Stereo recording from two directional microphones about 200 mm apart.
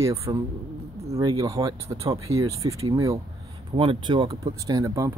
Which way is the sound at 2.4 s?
15° right (ahead or behind).